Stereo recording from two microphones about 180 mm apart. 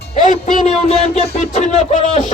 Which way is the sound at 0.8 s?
35° left (ahead or behind).